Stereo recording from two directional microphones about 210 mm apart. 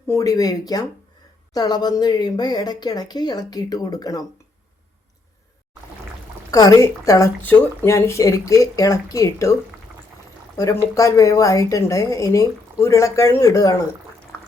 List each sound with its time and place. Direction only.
0.1 s a woman's voice: 15° left (ahead or behind)
6.5 s a woman's voice: 15° left (ahead or behind)
10.6 s a woman's voice: 15° left (ahead or behind)
14.3 s a sound: 5° left (ahead or behind)